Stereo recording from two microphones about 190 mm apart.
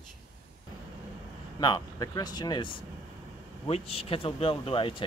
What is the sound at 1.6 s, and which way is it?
Speech, 20° left (ahead or behind).